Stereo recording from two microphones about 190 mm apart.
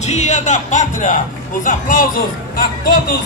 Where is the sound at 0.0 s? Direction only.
35° left (ahead or behind).